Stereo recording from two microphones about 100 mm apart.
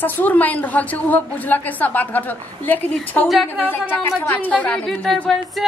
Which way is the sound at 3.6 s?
20° left (ahead or behind).